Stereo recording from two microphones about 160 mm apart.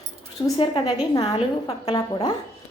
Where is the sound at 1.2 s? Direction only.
40° left (ahead or behind).